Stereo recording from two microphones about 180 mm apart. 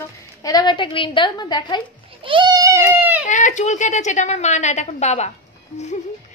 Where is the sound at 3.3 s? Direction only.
45° left (ahead or behind).